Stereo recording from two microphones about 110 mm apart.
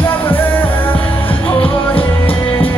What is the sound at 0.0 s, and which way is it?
Music, 20° left (ahead or behind).